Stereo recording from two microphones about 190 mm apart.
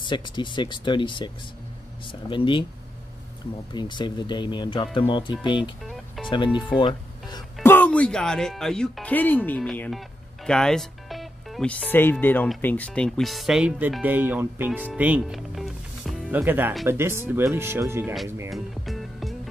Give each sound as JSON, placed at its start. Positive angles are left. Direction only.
{"t": 0.0, "sound": "speech", "side_deg": 25}
{"t": 3.7, "sound": "speech", "side_deg": 25}
{"t": 5.6, "sound": "music", "side_deg": 0}
{"t": 6.3, "sound": "speech", "side_deg": 25}
{"t": 7.6, "sound": "speech", "side_deg": 10}
{"t": 18.5, "sound": "music", "side_deg": 0}